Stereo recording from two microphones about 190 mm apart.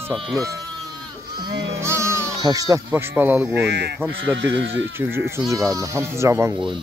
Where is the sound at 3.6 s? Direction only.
65° right (ahead or behind).